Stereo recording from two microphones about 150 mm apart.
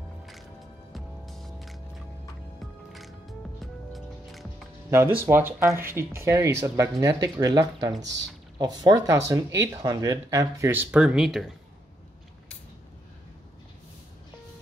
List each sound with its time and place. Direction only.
0.3 s music: centre (ahead or behind)
4.9 s speech: 15° right (ahead or behind); by 11.5 s centre (ahead or behind)